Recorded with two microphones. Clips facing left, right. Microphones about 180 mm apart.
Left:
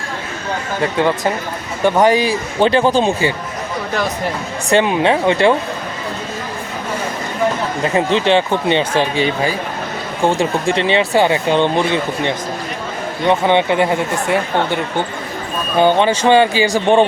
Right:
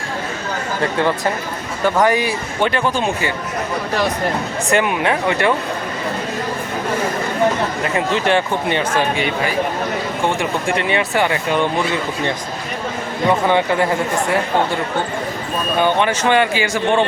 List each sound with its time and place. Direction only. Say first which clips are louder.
1.8 s speech: left 3 dB; 25° left (ahead or behind)
4.7 s speech: left 4 dB; 25° left (ahead or behind)
7.9 s speech: left 3 dB; 25° left (ahead or behind)
15.8 s speech: left 5 dB; 30° left (ahead or behind)